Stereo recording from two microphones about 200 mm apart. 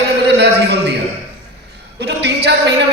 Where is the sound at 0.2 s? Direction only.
55° right (ahead or behind).